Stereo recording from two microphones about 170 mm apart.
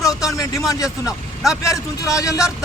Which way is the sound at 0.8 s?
5° right (ahead or behind).